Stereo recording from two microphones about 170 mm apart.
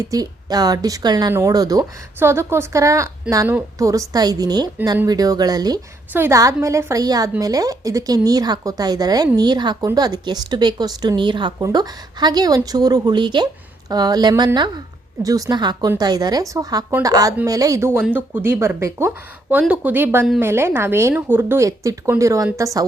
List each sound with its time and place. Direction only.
0.0 s a woman's voice: 20° right (ahead or behind)